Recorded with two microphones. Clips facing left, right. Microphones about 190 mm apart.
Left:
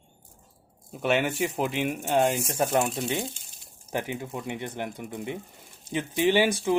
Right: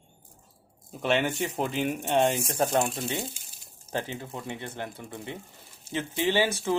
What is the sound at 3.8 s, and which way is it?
Speech, 15° left (ahead or behind).